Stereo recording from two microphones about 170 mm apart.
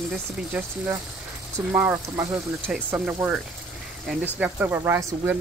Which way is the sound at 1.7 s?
10° right (ahead or behind).